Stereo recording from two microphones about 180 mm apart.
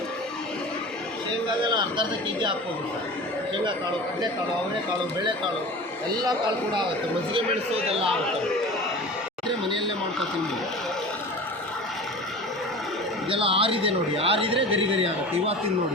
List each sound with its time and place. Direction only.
1.6 s speech: 25° right (ahead or behind)
9.6 s speech: 25° right (ahead or behind)
13.3 s speech: 30° right (ahead or behind)